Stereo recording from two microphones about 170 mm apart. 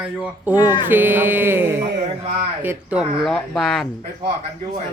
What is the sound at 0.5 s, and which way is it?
Speech, 25° left (ahead or behind).